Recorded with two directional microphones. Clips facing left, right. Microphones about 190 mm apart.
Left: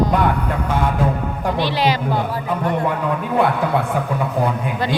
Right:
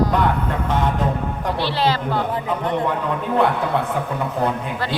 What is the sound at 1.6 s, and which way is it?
Speech, 15° left (ahead or behind).